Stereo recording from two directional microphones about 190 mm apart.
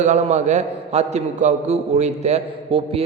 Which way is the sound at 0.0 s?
40° right (ahead or behind).